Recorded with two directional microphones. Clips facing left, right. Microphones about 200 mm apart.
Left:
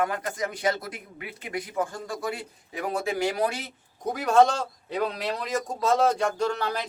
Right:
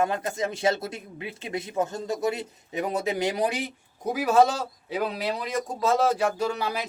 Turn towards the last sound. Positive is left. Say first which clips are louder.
# even
turn(degrees=-10)  # may be behind; listen again after turning